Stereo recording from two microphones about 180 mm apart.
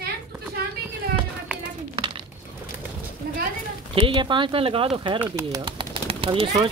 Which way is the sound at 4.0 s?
25° right (ahead or behind).